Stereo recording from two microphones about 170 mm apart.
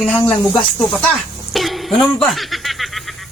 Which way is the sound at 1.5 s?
Centre (ahead or behind).